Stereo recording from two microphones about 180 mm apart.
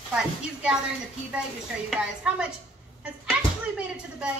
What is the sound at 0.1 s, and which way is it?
Speech, 5° right (ahead or behind).